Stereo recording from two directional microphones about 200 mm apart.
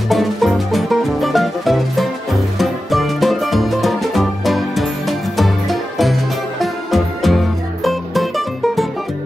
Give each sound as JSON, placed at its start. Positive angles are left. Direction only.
{"t": 0.1, "sound": "music", "side_deg": 0}